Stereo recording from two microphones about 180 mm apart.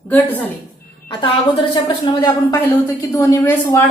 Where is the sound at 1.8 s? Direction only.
25° left (ahead or behind).